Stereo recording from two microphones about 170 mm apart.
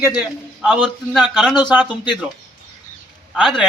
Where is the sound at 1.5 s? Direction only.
25° left (ahead or behind).